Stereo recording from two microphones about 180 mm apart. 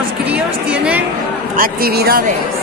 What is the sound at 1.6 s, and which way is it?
Speech, 60° right (ahead or behind).